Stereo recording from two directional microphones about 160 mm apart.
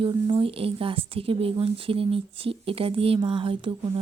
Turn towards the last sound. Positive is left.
turn(degrees=-30)  # may be behind; listen again after turning